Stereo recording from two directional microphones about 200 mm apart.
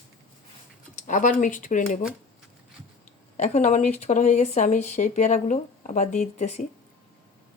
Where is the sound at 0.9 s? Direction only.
40° left (ahead or behind).